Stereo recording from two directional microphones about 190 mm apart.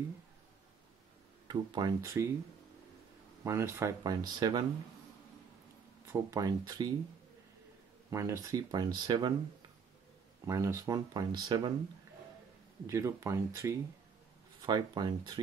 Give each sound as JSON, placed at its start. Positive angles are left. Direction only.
{"t": 1.5, "sound": "speech", "side_deg": -25}
{"t": 3.4, "sound": "speech", "side_deg": -15}
{"t": 6.0, "sound": "speech", "side_deg": -15}
{"t": 8.1, "sound": "speech", "side_deg": -15}
{"t": 12.8, "sound": "speech", "side_deg": -15}